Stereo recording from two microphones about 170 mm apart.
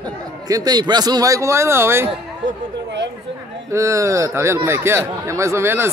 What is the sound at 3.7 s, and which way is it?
A man's voice, 15° right (ahead or behind).